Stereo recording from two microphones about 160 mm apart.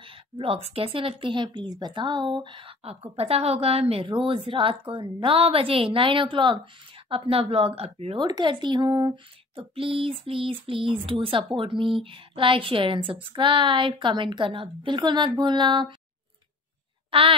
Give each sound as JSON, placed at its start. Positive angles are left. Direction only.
{"t": 0.0, "sound": "speech", "side_deg": -35}
{"t": 17.1, "sound": "speech", "side_deg": -35}